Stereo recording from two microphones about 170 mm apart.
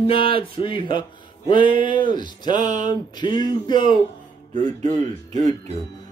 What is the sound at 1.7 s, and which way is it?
Speech, 30° left (ahead or behind).